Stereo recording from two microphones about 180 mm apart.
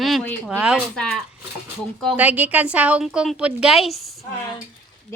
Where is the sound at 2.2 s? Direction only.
10° right (ahead or behind).